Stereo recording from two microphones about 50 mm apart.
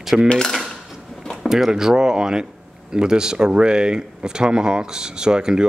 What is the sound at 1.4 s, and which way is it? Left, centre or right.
Speech, centre.